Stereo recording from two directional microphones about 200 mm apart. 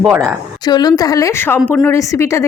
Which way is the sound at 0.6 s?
20° left (ahead or behind).